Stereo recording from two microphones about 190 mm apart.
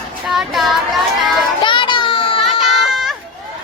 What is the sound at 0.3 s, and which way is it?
Speech, centre (ahead or behind).